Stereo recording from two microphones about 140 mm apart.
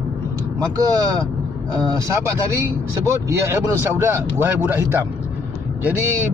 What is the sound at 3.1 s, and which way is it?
Speech, 20° right (ahead or behind).